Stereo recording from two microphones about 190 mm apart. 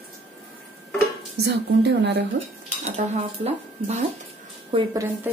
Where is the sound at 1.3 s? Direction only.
65° right (ahead or behind).